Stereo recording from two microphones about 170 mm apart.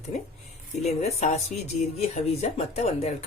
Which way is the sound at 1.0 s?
40° left (ahead or behind).